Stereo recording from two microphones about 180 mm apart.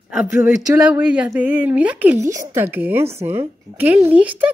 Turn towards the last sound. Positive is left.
turn(degrees=-10)  # may be behind; listen again after turning